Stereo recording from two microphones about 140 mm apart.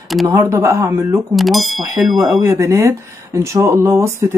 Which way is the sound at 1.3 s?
Centre (ahead or behind).